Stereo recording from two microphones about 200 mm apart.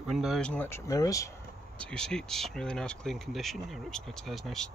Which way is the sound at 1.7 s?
5° left (ahead or behind).